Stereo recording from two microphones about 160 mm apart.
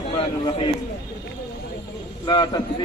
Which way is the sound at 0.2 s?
35° left (ahead or behind).